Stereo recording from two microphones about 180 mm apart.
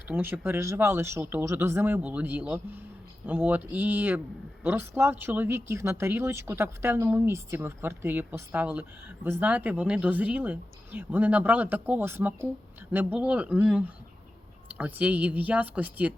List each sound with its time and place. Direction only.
0.1 s speech: 10° right (ahead or behind)